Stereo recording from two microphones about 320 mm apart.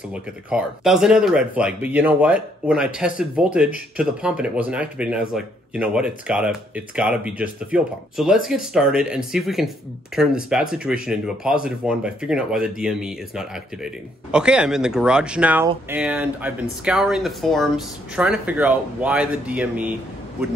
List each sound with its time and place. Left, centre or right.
0.1 s speech: centre